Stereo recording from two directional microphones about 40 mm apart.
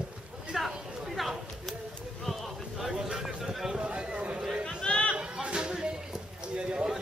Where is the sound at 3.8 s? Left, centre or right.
Right.